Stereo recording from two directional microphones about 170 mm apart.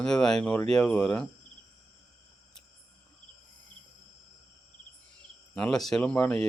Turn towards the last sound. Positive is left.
turn(degrees=5)  # may be behind; listen again after turning